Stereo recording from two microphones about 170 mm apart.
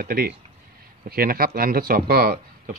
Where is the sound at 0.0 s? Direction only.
60° right (ahead or behind).